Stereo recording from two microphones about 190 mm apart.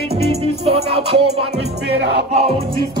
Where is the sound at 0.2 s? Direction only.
30° right (ahead or behind).